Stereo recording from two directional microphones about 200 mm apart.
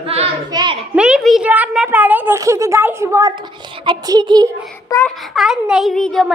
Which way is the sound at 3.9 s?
20° right (ahead or behind).